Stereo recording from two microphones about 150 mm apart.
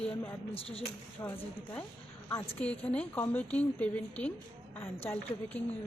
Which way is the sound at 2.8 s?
5° left (ahead or behind).